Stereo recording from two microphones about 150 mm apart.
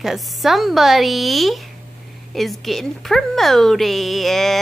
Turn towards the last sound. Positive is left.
turn(degrees=0)  # may be behind; listen again after turning